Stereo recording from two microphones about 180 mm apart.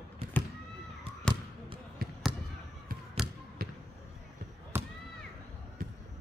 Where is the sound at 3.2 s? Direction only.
30° right (ahead or behind).